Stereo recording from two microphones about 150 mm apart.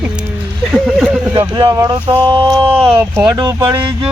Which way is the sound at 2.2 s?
35° right (ahead or behind).